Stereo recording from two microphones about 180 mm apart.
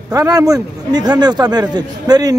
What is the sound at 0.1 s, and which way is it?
A man's voice, 15° right (ahead or behind).